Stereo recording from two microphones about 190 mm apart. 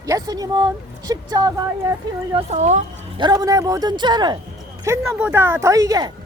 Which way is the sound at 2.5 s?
35° right (ahead or behind).